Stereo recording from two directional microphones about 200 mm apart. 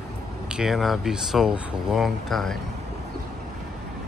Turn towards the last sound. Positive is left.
turn(degrees=0)  # may be behind; listen again after turning